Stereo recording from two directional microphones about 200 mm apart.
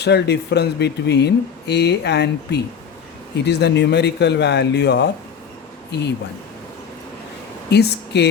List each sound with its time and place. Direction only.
0.0 s speech: 55° left (ahead or behind)
7.7 s speech: 55° left (ahead or behind)